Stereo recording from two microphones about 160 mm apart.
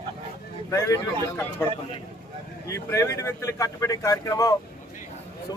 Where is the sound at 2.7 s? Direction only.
20° left (ahead or behind).